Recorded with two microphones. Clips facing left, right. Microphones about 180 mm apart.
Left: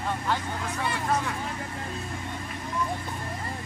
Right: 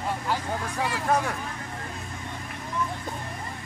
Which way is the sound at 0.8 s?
90° right.